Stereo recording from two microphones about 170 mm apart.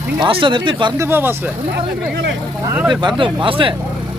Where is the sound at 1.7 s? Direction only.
70° right (ahead or behind).